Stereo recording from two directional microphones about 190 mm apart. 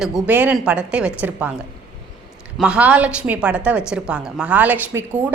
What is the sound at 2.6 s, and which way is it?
A woman's voice, 5° right (ahead or behind).